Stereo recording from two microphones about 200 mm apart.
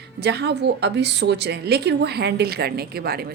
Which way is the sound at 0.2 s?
55° right (ahead or behind).